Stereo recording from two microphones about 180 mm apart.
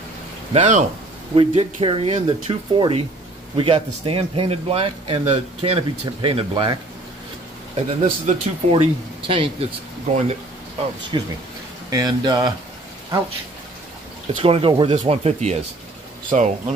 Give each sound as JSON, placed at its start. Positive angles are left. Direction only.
{"t": 0.5, "sound": "speech", "side_deg": -40}
{"t": 1.3, "sound": "speech", "side_deg": -30}
{"t": 7.7, "sound": "speech", "side_deg": -40}
{"t": 11.1, "sound": "speech", "side_deg": -25}
{"t": 14.4, "sound": "speech", "side_deg": -30}